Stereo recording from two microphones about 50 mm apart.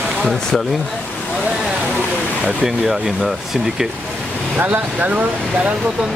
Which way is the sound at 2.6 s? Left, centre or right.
Centre.